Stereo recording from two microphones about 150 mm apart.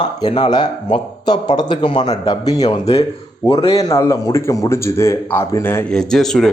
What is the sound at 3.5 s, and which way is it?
Speech, 40° left (ahead or behind).